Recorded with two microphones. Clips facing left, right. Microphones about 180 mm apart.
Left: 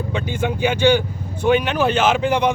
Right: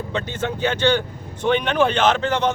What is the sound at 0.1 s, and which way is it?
Speech, 10° left (ahead or behind).